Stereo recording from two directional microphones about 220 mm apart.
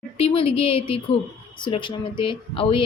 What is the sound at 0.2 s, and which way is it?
A woman's voice, 25° left (ahead or behind).